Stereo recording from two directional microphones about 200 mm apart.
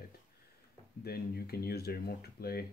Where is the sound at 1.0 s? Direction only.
50° left (ahead or behind).